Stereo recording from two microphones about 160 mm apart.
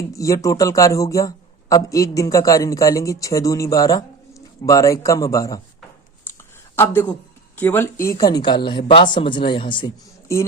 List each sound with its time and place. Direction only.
0.1 s speech: 20° left (ahead or behind)
6.7 s speech: 15° left (ahead or behind); by 9.9 s 30° left (ahead or behind)